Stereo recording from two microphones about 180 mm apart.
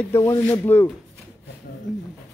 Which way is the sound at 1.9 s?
Centre (ahead or behind).